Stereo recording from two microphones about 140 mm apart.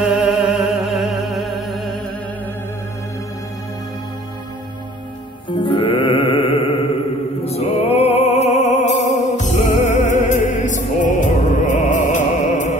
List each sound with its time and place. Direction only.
0.0 s music: 5° right (ahead or behind)
5.5 s music: 35° left (ahead or behind); by 12.7 s 65° left (ahead or behind)